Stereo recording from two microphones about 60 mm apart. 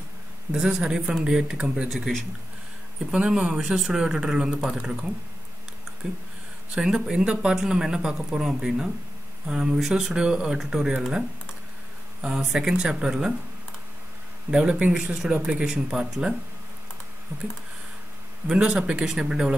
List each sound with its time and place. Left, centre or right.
0.5 s speech: centre
3.1 s speech: centre
6.7 s speech: centre
14.5 s speech: centre
18.5 s speech: centre